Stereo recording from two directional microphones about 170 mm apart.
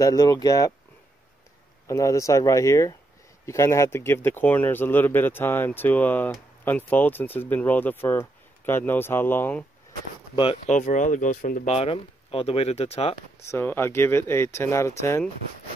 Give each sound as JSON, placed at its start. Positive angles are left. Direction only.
{"t": 0.0, "sound": "speech", "side_deg": 20}
{"t": 1.9, "sound": "speech", "side_deg": 20}
{"t": 10.3, "sound": "speech", "side_deg": 35}
{"t": 11.7, "sound": "speech", "side_deg": 35}
{"t": 13.5, "sound": "speech", "side_deg": 10}